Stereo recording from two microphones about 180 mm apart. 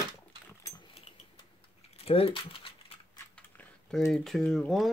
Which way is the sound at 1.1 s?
35° left (ahead or behind).